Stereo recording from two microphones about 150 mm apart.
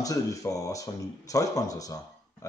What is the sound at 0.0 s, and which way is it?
Speech, 20° left (ahead or behind).